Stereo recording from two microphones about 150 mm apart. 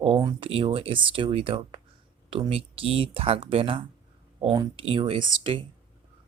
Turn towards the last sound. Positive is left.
turn(degrees=-35)  # may be behind; listen again after turning